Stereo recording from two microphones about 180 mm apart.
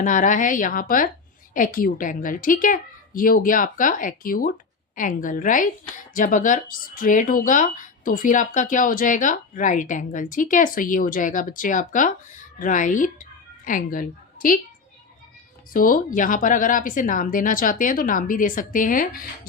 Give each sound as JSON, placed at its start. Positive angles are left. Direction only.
{"t": 0.0, "sound": "a woman's voice", "side_deg": 45}
{"t": 15.7, "sound": "speech", "side_deg": 50}